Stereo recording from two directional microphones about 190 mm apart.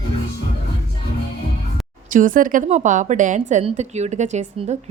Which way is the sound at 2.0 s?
45° right (ahead or behind).